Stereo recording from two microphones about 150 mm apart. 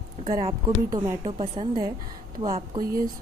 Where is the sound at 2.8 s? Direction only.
80° right.